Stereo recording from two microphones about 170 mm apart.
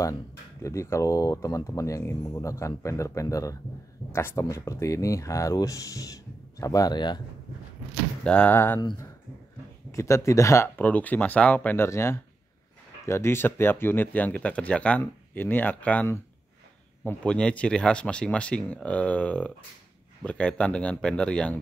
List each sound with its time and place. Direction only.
0.6 s speech: 20° left (ahead or behind)
8.2 s speech: 5° left (ahead or behind)
9.8 s speech: 15° left (ahead or behind)